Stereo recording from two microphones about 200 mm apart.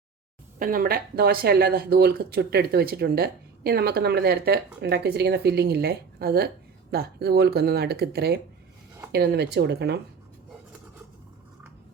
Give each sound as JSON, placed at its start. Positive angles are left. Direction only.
{"t": 0.6, "sound": "speech", "side_deg": -45}